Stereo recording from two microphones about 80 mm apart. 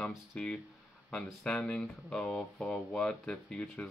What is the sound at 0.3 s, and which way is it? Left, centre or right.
Speech, centre.